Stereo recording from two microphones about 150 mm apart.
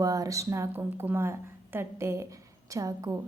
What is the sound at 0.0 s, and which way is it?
A woman's voice, 25° right (ahead or behind).